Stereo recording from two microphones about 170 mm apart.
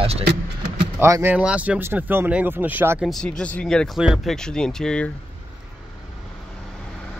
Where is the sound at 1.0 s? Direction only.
15° right (ahead or behind); by 5.1 s 5° left (ahead or behind).